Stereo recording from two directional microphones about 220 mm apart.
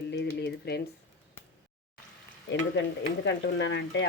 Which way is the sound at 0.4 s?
50° left (ahead or behind).